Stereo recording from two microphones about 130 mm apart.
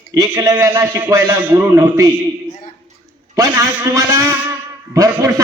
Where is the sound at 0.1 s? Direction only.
30° right (ahead or behind).